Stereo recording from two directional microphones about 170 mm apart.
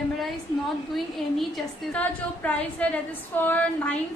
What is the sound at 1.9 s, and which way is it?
A woman's voice, 10° left (ahead or behind).